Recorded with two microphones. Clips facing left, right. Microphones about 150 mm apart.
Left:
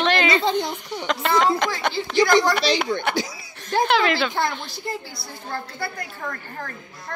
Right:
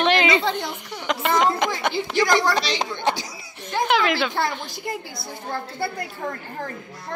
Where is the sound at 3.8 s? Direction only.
10° right (ahead or behind).